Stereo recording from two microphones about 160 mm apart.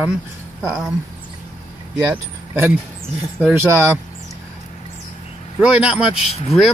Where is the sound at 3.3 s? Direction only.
15° right (ahead or behind).